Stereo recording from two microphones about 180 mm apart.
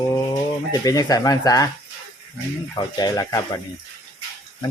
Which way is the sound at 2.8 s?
20° left (ahead or behind).